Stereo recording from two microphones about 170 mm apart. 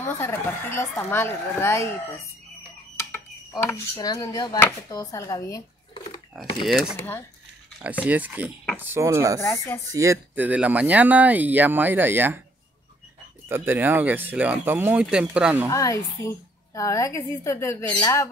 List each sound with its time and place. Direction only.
0.0 s a woman's voice: 15° left (ahead or behind)
3.0 s dishes: 15° left (ahead or behind)
4.6 s speech: 20° left (ahead or behind)
6.3 s speech: centre (ahead or behind)
13.5 s speech: 10° right (ahead or behind)
15.7 s a woman's voice: 20° left (ahead or behind)